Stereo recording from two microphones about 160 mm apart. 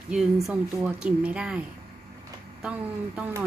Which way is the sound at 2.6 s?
10° right (ahead or behind).